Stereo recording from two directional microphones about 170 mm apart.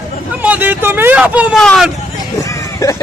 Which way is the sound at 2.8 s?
20° left (ahead or behind).